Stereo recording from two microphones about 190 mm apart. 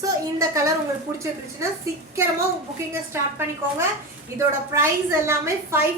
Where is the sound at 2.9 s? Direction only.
10° right (ahead or behind).